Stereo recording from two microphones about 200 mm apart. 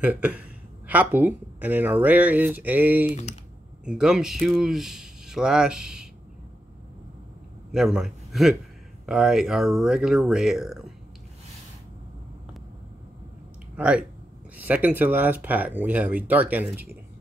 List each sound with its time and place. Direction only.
0.0 s speech: 5° right (ahead or behind)
3.1 s speech: 35° left (ahead or behind)
3.8 s speech: 5° right (ahead or behind)
7.7 s a man's voice: centre (ahead or behind)
13.7 s speech: 5° right (ahead or behind)